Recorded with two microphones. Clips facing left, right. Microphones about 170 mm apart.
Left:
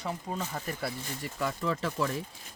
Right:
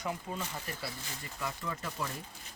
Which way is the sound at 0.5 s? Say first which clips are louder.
Left 6 dB; 55° left (ahead or behind).